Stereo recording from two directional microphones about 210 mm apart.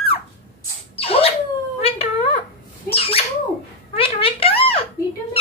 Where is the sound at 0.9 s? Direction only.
25° left (ahead or behind).